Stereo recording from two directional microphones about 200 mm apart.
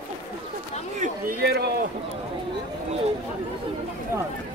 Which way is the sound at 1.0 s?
50° right (ahead or behind).